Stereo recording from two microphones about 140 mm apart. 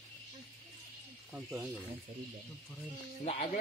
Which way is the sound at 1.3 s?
5° right (ahead or behind).